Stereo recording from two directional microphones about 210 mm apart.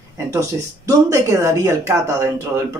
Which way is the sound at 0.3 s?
15° right (ahead or behind).